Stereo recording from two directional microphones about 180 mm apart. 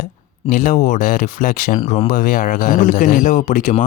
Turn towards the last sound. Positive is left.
turn(degrees=45)  # may be behind; listen again after turning